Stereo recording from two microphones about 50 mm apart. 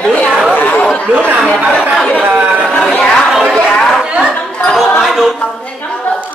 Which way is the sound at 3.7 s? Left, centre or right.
Centre.